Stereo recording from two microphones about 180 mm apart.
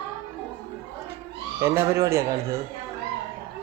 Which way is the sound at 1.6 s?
15° right (ahead or behind).